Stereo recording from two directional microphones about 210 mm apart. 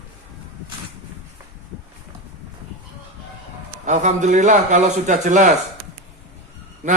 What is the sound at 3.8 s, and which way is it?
Speech, 35° right (ahead or behind).